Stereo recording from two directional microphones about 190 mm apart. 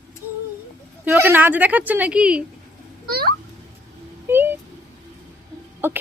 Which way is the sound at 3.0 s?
55° right (ahead or behind).